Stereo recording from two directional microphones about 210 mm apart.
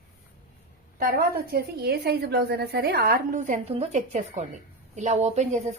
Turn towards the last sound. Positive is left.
turn(degrees=-30)  # may be behind; listen again after turning